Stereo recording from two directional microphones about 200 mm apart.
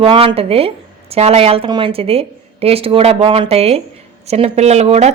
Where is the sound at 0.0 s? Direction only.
25° right (ahead or behind).